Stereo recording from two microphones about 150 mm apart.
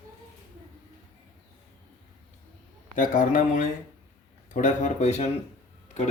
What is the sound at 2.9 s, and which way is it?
Speech, 65° left (ahead or behind).